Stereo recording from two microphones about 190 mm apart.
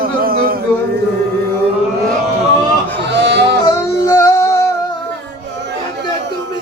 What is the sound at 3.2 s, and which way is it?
Music, 65° right (ahead or behind).